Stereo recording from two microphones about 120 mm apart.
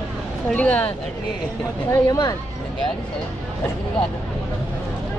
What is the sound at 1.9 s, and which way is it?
Speech, 30° left (ahead or behind).